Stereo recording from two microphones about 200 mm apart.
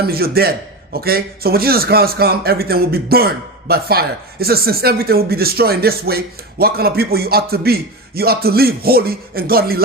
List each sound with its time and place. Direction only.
0.0 s a man's voice: 50° right (ahead or behind)